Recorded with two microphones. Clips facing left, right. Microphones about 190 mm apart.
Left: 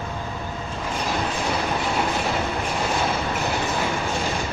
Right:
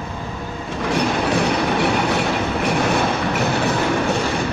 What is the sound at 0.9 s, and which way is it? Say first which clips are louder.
Train: right 8 dB; 75° right (ahead or behind).